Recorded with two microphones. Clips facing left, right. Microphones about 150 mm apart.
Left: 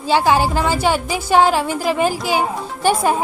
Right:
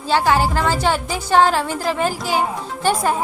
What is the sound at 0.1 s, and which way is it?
A woman's voice, 15° left (ahead or behind).